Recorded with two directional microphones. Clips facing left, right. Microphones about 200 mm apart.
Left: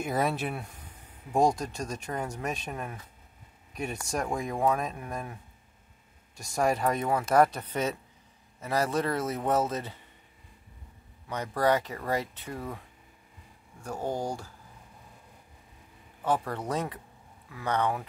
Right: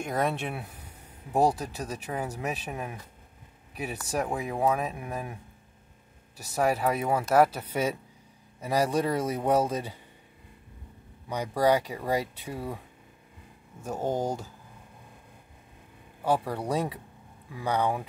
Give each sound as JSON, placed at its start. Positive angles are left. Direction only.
{"t": 0.0, "sound": "speech", "side_deg": 5}
{"t": 11.2, "sound": "speech", "side_deg": -10}
{"t": 16.2, "sound": "speech", "side_deg": -10}